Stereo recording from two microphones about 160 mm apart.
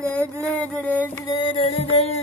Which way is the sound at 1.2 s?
30° left (ahead or behind).